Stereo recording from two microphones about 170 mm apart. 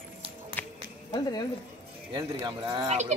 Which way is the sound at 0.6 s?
10° left (ahead or behind).